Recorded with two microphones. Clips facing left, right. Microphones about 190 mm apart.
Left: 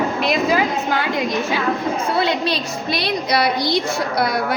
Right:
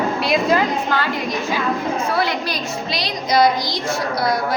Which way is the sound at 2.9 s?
60° left (ahead or behind).